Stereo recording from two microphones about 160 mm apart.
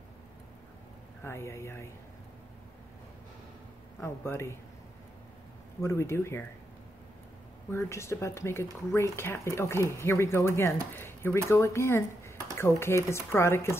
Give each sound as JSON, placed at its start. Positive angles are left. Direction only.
{"t": 1.2, "sound": "speech", "side_deg": 15}
{"t": 4.0, "sound": "speech", "side_deg": 15}
{"t": 5.8, "sound": "speech", "side_deg": 15}
{"t": 7.7, "sound": "speech", "side_deg": 15}